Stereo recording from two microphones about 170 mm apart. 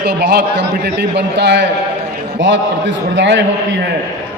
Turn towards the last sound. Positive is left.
turn(degrees=-90)